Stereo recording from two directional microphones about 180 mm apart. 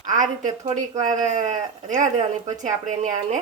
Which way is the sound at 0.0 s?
45° right (ahead or behind).